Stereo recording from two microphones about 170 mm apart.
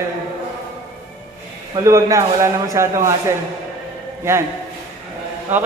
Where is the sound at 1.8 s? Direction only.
20° right (ahead or behind).